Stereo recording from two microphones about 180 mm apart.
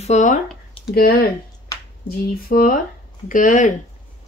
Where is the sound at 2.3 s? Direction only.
55° left (ahead or behind).